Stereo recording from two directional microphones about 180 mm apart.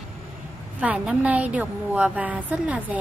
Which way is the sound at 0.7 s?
5° right (ahead or behind).